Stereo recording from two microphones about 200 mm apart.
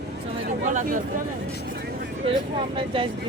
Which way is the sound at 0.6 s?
40° right (ahead or behind).